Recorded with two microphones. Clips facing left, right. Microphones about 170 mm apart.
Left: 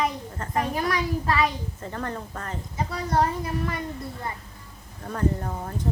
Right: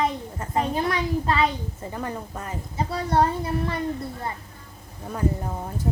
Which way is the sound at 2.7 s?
30° right (ahead or behind).